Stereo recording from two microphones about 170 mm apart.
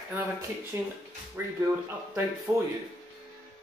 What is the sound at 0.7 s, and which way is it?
Speech, 15° right (ahead or behind).